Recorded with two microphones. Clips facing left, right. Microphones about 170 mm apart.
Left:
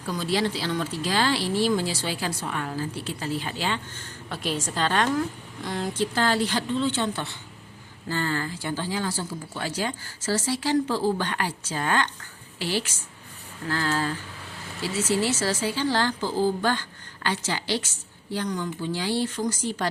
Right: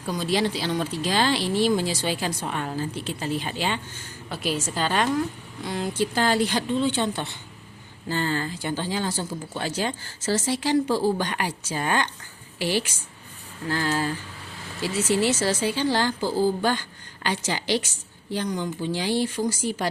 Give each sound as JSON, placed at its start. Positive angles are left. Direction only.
{"t": 0.1, "sound": "speech", "side_deg": -15}
{"t": 4.3, "sound": "a woman's voice", "side_deg": -5}
{"t": 6.1, "sound": "a woman's voice", "side_deg": -15}
{"t": 15.2, "sound": "a woman's voice", "side_deg": -15}